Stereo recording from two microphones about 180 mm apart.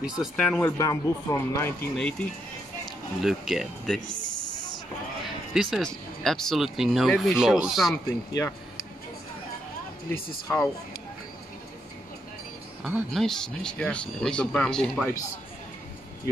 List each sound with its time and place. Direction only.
0.0 s speech: centre (ahead or behind)
0.6 s speech: 15° left (ahead or behind)
5.5 s speech: centre (ahead or behind)
8.3 s speech: 15° left (ahead or behind)
10.1 s speech: 55° left (ahead or behind)
12.8 s speech: centre (ahead or behind)